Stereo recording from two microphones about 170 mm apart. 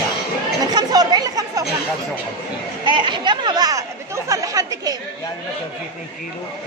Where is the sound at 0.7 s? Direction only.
25° right (ahead or behind).